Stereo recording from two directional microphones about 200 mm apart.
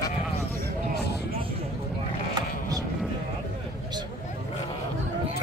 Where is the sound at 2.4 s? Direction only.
20° right (ahead or behind).